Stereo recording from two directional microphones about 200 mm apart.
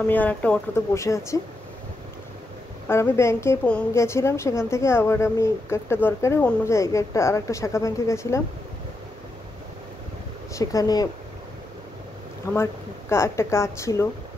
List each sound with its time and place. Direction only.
0.0 s a woman's voice: 5° left (ahead or behind)
2.9 s a woman's voice: 10° left (ahead or behind)
10.5 s a woman's voice: 15° left (ahead or behind)
12.5 s a woman's voice: 15° left (ahead or behind)